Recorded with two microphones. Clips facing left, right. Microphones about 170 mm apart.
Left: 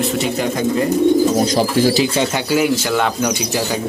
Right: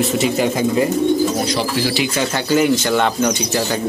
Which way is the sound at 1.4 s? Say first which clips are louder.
Left 5 dB; 45° left (ahead or behind).